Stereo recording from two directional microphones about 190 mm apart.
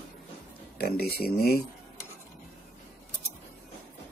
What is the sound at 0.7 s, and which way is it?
Speech, 55° left (ahead or behind).